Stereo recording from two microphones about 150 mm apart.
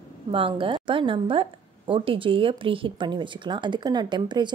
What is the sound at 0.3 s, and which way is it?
A woman's voice, 35° right (ahead or behind).